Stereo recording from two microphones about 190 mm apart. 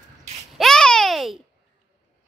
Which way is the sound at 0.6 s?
5° left (ahead or behind).